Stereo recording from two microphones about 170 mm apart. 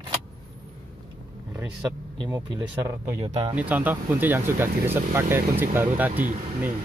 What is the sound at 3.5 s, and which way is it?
Speech, 10° right (ahead or behind).